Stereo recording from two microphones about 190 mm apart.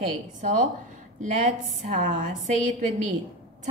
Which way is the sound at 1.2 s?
40° right (ahead or behind).